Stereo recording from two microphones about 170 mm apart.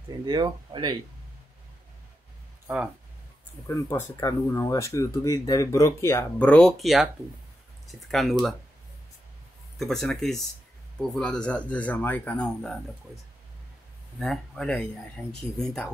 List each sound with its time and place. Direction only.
0.2 s speech: 25° right (ahead or behind)
3.6 s speech: 15° left (ahead or behind); by 8.5 s centre (ahead or behind)
9.8 s speech: centre (ahead or behind)
14.2 s speech: 5° left (ahead or behind)